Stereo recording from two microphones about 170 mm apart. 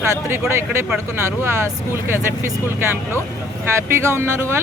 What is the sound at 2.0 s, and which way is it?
Speech, 15° right (ahead or behind).